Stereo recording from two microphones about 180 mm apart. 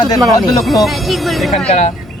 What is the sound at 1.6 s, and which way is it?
Speech, 40° left (ahead or behind).